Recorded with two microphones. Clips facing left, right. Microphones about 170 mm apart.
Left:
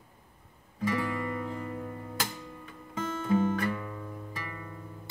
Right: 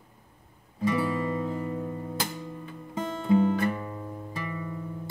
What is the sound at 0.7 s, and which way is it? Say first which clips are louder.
Guitar: right 4 dB; 25° right (ahead or behind).